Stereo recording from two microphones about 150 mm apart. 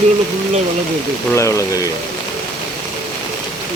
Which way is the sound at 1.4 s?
20° left (ahead or behind).